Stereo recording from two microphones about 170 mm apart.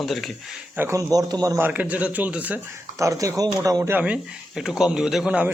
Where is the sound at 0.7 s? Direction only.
15° right (ahead or behind).